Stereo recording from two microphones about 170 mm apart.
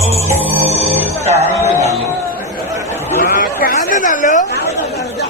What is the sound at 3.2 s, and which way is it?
Chatter, 55° left (ahead or behind).